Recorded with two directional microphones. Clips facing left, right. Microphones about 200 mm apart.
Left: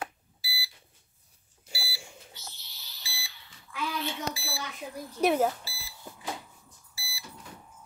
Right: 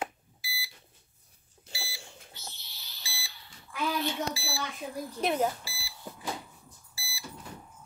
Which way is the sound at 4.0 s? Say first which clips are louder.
Right 2 dB; 30° right (ahead or behind).